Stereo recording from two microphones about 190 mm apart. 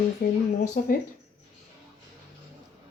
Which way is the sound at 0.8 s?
45° left (ahead or behind).